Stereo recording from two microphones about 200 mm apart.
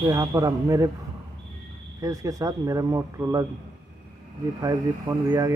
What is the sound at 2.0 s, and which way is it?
Speech, 15° right (ahead or behind).